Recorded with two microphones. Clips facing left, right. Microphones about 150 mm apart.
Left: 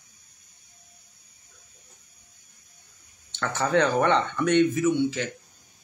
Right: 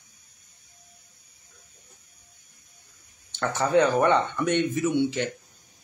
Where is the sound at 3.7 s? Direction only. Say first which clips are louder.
Right 1 dB; 10° right (ahead or behind).